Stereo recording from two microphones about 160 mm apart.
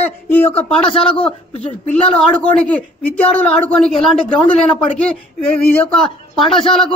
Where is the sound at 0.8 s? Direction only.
35° left (ahead or behind).